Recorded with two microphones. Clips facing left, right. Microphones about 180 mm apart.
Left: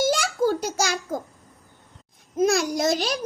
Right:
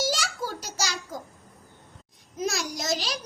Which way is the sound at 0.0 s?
55° left (ahead or behind).